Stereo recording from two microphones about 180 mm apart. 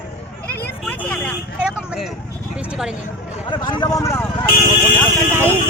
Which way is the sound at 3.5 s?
25° left (ahead or behind).